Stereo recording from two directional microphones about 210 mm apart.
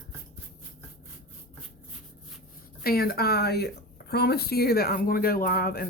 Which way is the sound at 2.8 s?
45° left (ahead or behind).